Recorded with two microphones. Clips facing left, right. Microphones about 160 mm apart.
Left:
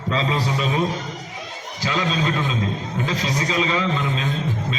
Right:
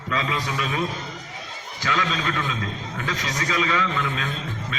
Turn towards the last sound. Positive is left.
turn(degrees=20)  # may be behind; listen again after turning